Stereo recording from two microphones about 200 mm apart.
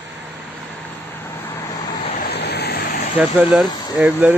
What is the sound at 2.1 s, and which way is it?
Vehicle, 55° left (ahead or behind).